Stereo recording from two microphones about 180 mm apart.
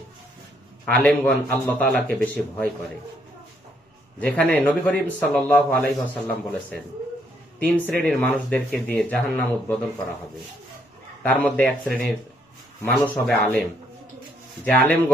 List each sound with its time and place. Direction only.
0.9 s a man's voice: 10° left (ahead or behind)
4.2 s a man's voice: 10° left (ahead or behind)
11.2 s a man's voice: 10° left (ahead or behind)